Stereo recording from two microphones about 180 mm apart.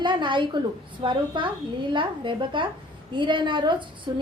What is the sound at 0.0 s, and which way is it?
A woman's voice, 25° right (ahead or behind).